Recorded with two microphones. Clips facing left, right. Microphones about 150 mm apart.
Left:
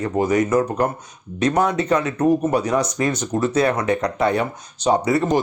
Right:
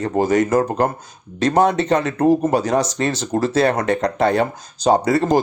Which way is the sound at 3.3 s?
50° right (ahead or behind).